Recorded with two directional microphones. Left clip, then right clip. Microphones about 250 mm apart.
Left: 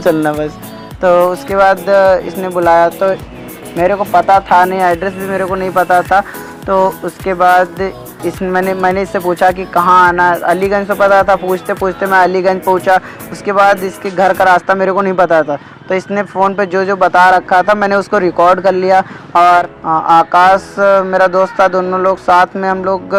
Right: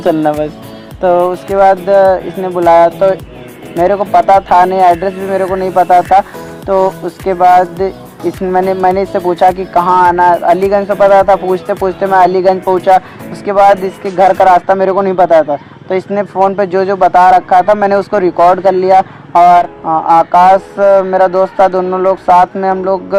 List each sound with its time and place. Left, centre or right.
0.0 s speech: centre